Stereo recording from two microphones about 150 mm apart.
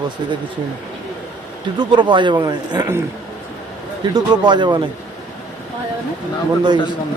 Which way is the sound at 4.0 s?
30° right (ahead or behind).